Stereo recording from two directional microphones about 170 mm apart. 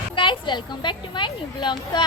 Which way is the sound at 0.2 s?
30° left (ahead or behind).